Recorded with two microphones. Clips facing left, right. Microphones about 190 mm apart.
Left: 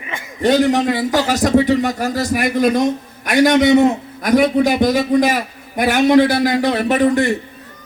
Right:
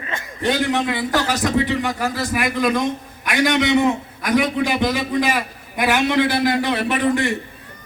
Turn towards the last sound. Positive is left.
turn(degrees=40)  # may be behind; listen again after turning